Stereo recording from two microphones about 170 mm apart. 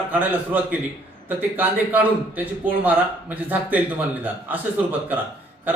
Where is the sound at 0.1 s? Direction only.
10° right (ahead or behind).